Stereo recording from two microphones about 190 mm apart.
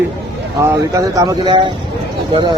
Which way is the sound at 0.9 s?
15° right (ahead or behind).